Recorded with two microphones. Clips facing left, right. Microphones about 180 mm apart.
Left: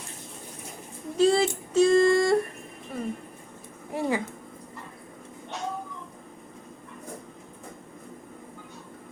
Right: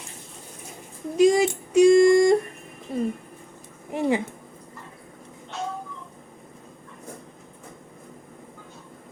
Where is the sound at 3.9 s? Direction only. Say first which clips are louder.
Right 4 dB; 20° right (ahead or behind).